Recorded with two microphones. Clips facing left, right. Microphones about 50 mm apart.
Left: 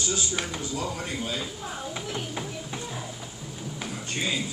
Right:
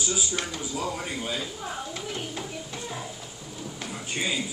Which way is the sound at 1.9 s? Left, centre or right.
Centre.